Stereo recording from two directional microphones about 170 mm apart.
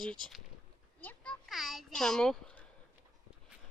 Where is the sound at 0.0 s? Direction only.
5° left (ahead or behind).